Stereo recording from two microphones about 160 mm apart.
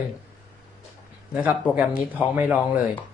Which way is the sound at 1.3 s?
10° right (ahead or behind).